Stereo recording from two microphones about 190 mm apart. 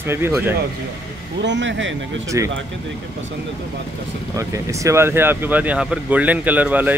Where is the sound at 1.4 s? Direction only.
70° right (ahead or behind).